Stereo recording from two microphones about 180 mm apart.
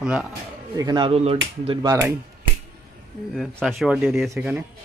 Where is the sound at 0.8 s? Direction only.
25° right (ahead or behind).